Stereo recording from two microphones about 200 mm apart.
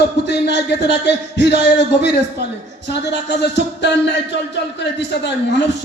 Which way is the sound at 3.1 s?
60° left (ahead or behind).